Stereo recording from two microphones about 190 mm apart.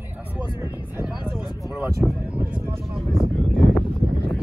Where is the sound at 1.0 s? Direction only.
5° right (ahead or behind).